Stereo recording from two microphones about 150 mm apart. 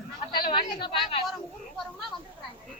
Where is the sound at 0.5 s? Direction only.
35° left (ahead or behind).